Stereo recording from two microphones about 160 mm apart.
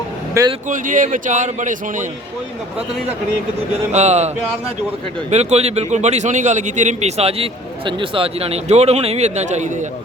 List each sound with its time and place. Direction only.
0.4 s speech: 20° right (ahead or behind)
0.7 s a man's voice: 55° right (ahead or behind)
3.9 s a man's voice: 45° right (ahead or behind)
5.3 s a man's voice: 45° right (ahead or behind)